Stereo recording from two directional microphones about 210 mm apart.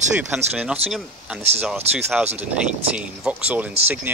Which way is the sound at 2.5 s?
5° right (ahead or behind).